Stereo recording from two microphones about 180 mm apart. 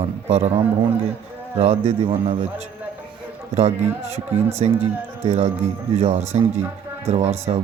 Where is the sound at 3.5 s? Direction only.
35° right (ahead or behind).